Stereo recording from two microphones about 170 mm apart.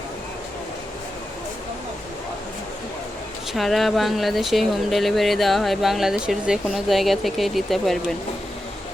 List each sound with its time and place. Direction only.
3.5 s speech: centre (ahead or behind)